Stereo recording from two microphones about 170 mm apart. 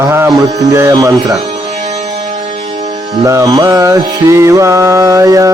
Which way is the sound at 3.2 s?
20° right (ahead or behind).